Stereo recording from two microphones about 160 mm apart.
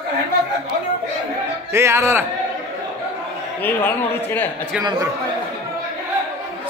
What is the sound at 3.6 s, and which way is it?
Speech, 10° left (ahead or behind).